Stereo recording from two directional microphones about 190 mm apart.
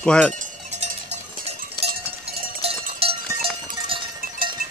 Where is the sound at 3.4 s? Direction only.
25° right (ahead or behind).